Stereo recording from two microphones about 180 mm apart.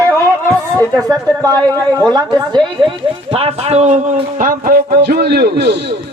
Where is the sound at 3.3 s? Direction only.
35° right (ahead or behind).